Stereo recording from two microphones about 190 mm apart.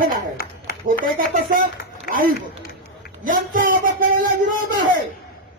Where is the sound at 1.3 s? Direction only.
45° right (ahead or behind).